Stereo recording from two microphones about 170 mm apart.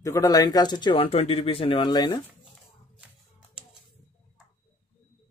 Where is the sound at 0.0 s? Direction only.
20° left (ahead or behind).